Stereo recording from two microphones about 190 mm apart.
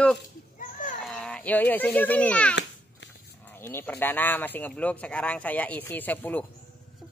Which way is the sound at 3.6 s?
10° left (ahead or behind).